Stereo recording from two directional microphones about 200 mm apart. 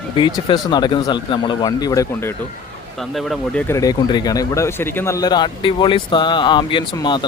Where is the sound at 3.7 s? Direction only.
15° left (ahead or behind).